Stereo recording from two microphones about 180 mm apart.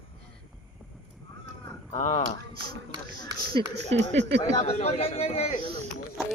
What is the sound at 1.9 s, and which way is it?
Speech, 40° left (ahead or behind).